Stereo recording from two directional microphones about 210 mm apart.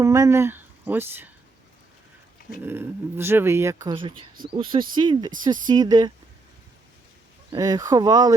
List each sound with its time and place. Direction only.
0.0 s speech: 15° right (ahead or behind)
2.6 s speech: 10° right (ahead or behind)
7.5 s speech: 20° right (ahead or behind)